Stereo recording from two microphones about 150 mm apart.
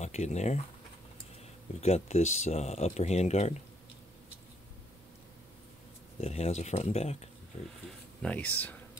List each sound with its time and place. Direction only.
0.0 s speech: 50° left (ahead or behind)
1.8 s speech: 45° left (ahead or behind)
6.2 s speech: 45° left (ahead or behind)
8.2 s speech: 10° left (ahead or behind)